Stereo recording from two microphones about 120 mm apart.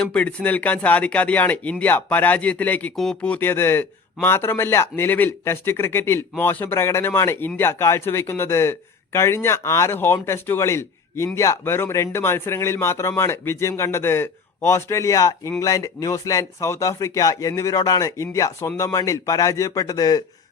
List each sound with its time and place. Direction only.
0.0 s speech: 10° left (ahead or behind)
2.9 s speech: 5° left (ahead or behind); by 20.2 s 30° left (ahead or behind)